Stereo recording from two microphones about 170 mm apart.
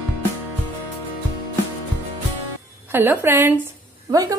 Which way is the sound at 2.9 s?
10° right (ahead or behind).